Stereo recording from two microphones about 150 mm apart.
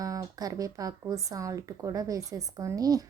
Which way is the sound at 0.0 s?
25° right (ahead or behind).